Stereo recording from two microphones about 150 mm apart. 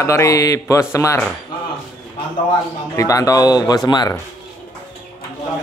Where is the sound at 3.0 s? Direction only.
20° left (ahead or behind).